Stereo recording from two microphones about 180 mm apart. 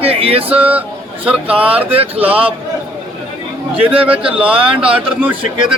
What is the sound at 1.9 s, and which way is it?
Speech, 35° right (ahead or behind).